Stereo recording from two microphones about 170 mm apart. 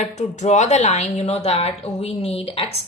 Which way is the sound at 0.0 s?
45° left (ahead or behind).